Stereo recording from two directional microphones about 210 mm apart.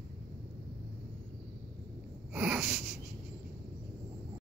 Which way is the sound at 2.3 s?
5° right (ahead or behind).